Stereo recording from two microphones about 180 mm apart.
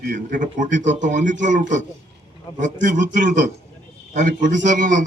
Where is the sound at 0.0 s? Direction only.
50° right (ahead or behind).